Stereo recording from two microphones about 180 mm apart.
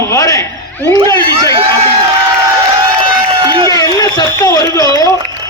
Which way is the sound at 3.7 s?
20° left (ahead or behind).